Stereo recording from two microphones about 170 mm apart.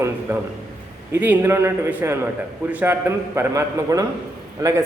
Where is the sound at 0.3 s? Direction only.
10° right (ahead or behind).